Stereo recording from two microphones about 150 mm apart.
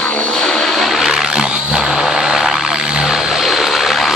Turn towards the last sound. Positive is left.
turn(degrees=0)  # may be behind; listen again after turning